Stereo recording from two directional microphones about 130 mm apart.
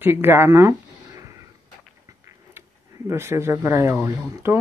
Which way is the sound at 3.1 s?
20° right (ahead or behind).